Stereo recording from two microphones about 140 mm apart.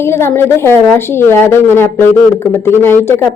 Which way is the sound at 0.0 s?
15° left (ahead or behind).